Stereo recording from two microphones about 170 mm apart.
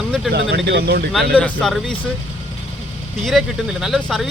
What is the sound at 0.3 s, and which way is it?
Speech, 75° right (ahead or behind).